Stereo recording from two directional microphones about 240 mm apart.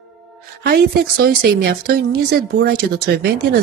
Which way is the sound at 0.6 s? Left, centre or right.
Right.